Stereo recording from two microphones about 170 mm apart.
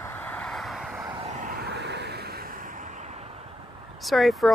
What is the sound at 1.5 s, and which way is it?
Vehicle, 75° right (ahead or behind).